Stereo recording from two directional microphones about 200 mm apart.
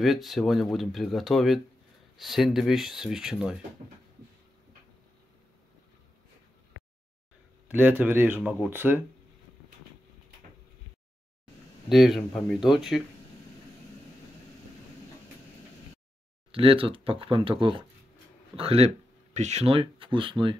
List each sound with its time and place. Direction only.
0.0 s speech: centre (ahead or behind)
7.6 s a man's voice: 10° right (ahead or behind)
11.9 s speech: centre (ahead or behind)
16.5 s speech: 25° right (ahead or behind)